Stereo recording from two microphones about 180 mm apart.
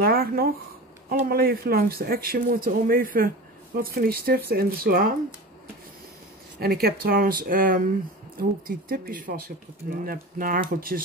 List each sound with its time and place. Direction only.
0.0 s speech: 55° right (ahead or behind)
6.6 s speech: 60° right (ahead or behind)